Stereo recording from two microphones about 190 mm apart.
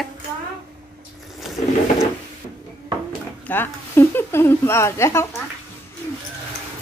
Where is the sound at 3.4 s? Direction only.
10° left (ahead or behind).